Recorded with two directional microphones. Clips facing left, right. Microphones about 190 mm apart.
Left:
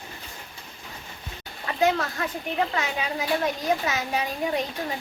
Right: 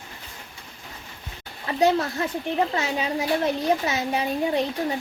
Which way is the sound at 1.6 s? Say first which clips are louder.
Right 3 dB; 25° right (ahead or behind).